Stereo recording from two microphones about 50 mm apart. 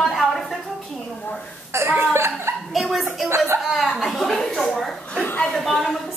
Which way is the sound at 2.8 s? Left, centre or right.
Centre.